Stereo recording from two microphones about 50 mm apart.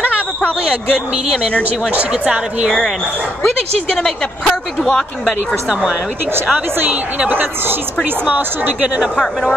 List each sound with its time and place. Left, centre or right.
1.6 s speech: right
3.9 s speech: centre
5.7 s speech: centre
7.2 s a woman's voice: right
9.1 s speech: centre